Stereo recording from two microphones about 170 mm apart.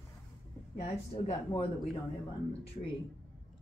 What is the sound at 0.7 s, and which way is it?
Speech, 40° left (ahead or behind).